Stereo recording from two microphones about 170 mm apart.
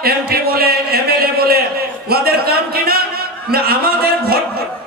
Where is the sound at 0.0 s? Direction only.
65° right (ahead or behind).